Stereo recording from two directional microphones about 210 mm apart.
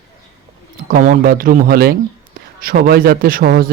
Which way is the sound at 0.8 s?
40° right (ahead or behind).